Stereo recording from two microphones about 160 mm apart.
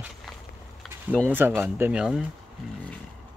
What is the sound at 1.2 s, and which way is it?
Speech, 15° right (ahead or behind).